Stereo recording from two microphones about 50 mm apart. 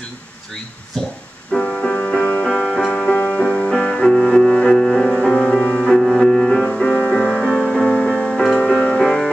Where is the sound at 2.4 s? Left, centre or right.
Centre.